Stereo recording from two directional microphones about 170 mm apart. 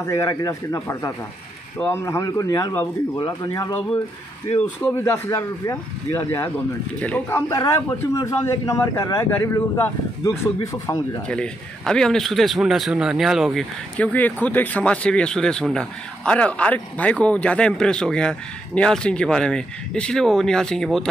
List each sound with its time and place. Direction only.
0.0 s a man's voice: 20° left (ahead or behind)
11.2 s a man's voice: 5° left (ahead or behind)